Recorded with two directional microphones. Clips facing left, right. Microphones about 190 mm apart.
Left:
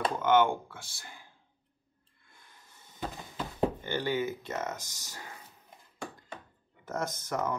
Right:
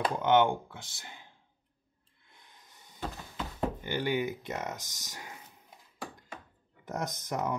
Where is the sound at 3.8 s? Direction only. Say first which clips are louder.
Even; 15° right (ahead or behind).